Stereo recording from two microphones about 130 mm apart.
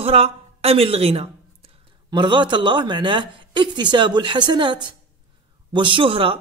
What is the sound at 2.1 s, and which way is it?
Speech, 35° right (ahead or behind).